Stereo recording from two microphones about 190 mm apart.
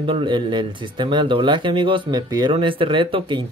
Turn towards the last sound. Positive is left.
turn(degrees=-25)  # may be behind; listen again after turning